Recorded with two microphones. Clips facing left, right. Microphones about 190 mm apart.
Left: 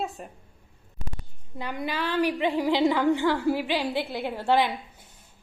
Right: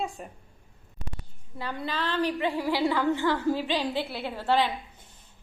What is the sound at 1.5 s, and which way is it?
A woman's voice, 15° left (ahead or behind).